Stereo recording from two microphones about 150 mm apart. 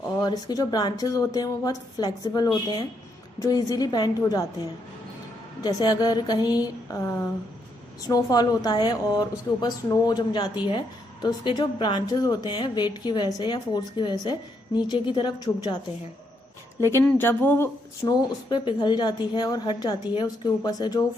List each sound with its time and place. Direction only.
0.0 s a woman's voice: 25° left (ahead or behind)
5.6 s a woman's voice: 25° left (ahead or behind)
8.1 s a woman's voice: 25° left (ahead or behind)
16.8 s speech: 15° left (ahead or behind)
18.0 s a woman's voice: 30° left (ahead or behind)